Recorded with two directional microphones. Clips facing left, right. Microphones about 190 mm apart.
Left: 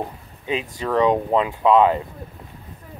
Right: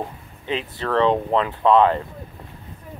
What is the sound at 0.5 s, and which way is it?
Speech, 10° left (ahead or behind).